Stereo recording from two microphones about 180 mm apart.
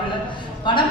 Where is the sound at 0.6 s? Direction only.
25° left (ahead or behind).